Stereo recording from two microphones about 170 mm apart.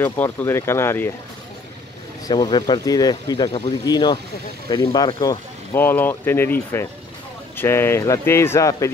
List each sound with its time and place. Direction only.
0.0 s speech: 10° left (ahead or behind)
2.2 s speech: 25° left (ahead or behind)
3.4 s speech: 35° left (ahead or behind)
3.8 s speech: 25° left (ahead or behind)